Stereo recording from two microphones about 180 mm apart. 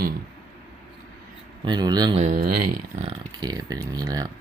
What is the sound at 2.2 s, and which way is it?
Speech, 45° right (ahead or behind).